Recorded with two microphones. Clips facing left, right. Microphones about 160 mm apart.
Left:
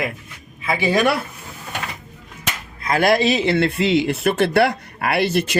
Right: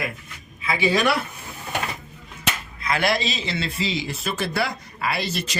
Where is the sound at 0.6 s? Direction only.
50° left (ahead or behind).